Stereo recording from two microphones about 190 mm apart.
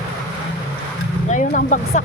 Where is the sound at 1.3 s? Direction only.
40° left (ahead or behind).